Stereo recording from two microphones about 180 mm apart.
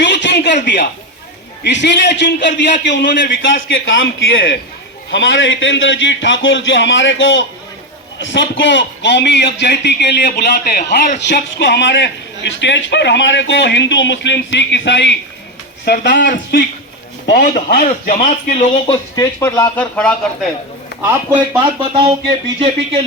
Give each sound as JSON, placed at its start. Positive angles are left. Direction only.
{"t": 0.0, "sound": "a sound", "side_deg": 75}
{"t": 1.6, "sound": "a man's voice", "side_deg": 75}
{"t": 3.4, "sound": "a man's voice", "side_deg": 90}
{"t": 15.8, "sound": "a man's voice", "side_deg": 65}
{"t": 16.3, "sound": "a man's voice", "side_deg": 55}
{"t": 18.3, "sound": "speech", "side_deg": 40}
{"t": 18.9, "sound": "speech", "side_deg": 20}
{"t": 21.1, "sound": "speech", "side_deg": -10}
{"t": 21.8, "sound": "speech", "side_deg": -30}